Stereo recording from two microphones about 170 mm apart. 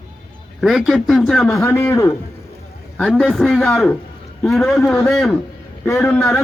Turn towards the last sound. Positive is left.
turn(degrees=0)  # may be behind; listen again after turning